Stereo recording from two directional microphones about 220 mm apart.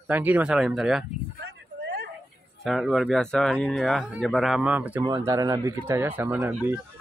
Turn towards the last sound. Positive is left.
turn(degrees=-10)  # may be behind; listen again after turning